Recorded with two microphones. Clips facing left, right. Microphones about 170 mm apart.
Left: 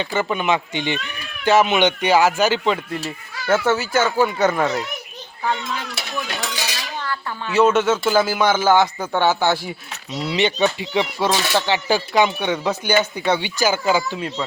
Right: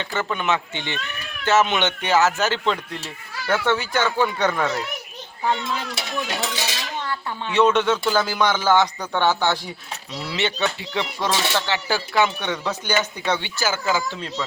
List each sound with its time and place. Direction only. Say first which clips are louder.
0.0 s speech: left 4 dB; 15° left (ahead or behind)
5.4 s speech: even; 20° right (ahead or behind)
7.5 s speech: left 2 dB; 5° left (ahead or behind)